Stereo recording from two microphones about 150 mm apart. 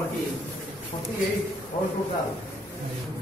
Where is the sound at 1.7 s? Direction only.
45° left (ahead or behind).